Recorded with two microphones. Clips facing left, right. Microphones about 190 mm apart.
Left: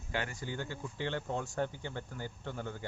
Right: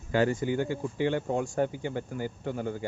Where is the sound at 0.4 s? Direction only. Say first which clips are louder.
Right 11 dB; 15° right (ahead or behind).